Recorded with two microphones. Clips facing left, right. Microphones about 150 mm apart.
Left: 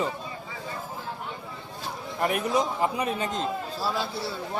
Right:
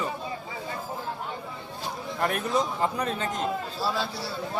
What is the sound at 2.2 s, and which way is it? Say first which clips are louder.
A man's voice: left 1 dB; 10° left (ahead or behind).